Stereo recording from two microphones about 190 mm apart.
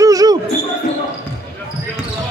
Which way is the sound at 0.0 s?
20° right (ahead or behind).